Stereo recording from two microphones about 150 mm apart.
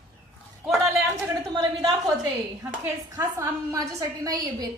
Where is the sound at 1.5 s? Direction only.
25° right (ahead or behind).